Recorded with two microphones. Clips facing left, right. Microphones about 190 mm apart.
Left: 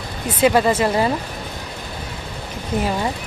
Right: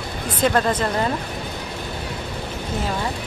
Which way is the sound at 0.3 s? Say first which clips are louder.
Left 4 dB; 10° left (ahead or behind).